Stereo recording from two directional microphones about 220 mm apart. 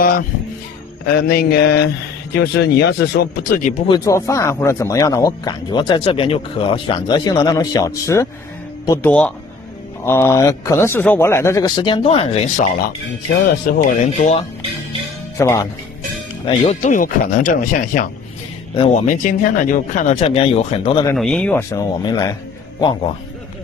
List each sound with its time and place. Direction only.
1.0 s speech: 45° left (ahead or behind)
3.8 s speech: 15° left (ahead or behind)
13.7 s speech: 35° left (ahead or behind)
15.3 s speech: 15° left (ahead or behind)
16.4 s speech: 30° left (ahead or behind)
21.1 s speech: 5° left (ahead or behind)